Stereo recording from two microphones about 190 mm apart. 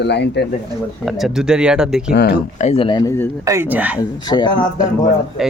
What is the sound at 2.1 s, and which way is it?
Speech, 55° left (ahead or behind).